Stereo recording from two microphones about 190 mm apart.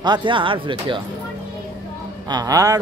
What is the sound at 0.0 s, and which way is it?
Speech, 25° right (ahead or behind).